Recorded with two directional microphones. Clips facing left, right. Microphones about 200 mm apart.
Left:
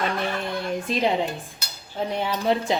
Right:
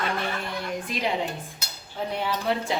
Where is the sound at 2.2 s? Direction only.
20° left (ahead or behind).